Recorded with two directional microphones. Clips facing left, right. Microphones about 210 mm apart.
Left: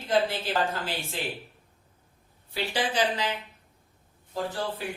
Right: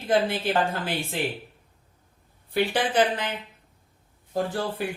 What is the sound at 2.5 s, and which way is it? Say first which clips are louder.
Speech: right 5 dB; 55° right (ahead or behind).